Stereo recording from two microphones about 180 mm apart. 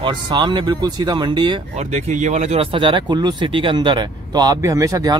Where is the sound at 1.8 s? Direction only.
40° right (ahead or behind); by 5.1 s 20° right (ahead or behind).